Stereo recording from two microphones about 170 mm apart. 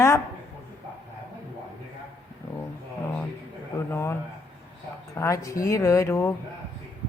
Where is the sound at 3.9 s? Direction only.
15° left (ahead or behind).